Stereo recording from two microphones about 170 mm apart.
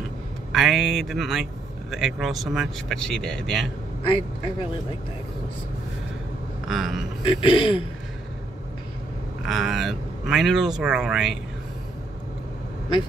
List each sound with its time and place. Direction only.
0.5 s speech: centre (ahead or behind)
4.0 s a man's voice: 30° left (ahead or behind)
6.7 s speech: 5° right (ahead or behind)
7.3 s a man's voice: 30° left (ahead or behind)
9.5 s speech: centre (ahead or behind)